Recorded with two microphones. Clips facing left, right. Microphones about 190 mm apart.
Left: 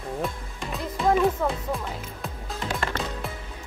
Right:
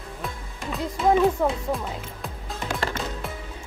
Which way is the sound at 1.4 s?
15° right (ahead or behind).